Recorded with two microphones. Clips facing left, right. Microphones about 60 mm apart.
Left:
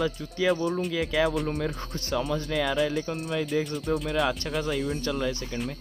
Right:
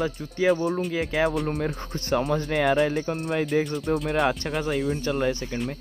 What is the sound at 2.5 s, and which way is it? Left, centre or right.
Speech, right.